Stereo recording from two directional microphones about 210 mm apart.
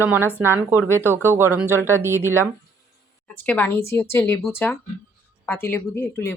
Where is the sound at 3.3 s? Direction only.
10° left (ahead or behind).